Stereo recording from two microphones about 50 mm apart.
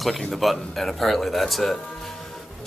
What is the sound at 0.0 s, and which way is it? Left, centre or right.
Speech, centre.